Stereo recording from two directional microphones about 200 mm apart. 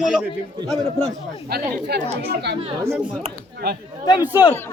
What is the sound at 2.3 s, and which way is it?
Speech, 55° right (ahead or behind).